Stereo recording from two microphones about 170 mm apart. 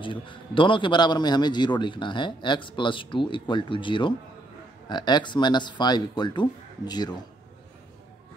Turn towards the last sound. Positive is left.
turn(degrees=25)  # may be behind; listen again after turning